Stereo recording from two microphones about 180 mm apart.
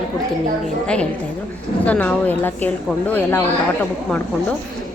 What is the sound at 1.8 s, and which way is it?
A woman's voice, 10° left (ahead or behind).